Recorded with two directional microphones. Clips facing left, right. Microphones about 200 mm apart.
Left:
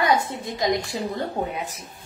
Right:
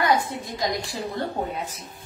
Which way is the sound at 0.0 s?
25° left (ahead or behind).